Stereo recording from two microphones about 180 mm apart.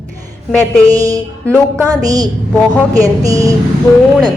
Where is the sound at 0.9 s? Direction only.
20° right (ahead or behind).